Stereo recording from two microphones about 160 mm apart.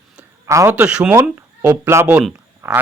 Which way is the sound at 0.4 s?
20° right (ahead or behind).